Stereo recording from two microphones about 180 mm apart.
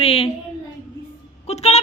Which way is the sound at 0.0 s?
30° left (ahead or behind).